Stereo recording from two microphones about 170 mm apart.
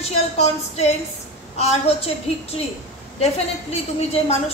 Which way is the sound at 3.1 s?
35° left (ahead or behind).